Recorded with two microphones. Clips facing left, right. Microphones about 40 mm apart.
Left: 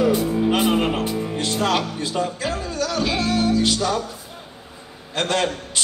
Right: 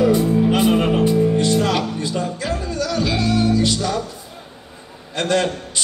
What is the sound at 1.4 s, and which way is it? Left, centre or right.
Music, left.